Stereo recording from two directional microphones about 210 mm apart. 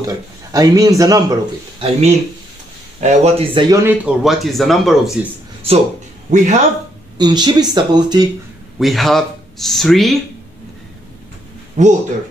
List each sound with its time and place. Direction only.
0.0 s a man's voice: 15° right (ahead or behind); by 5.1 s centre (ahead or behind)
6.3 s speech: 35° right (ahead or behind)
7.2 s speech: 20° right (ahead or behind)
8.7 s speech: centre (ahead or behind)
11.7 s speech: 35° right (ahead or behind)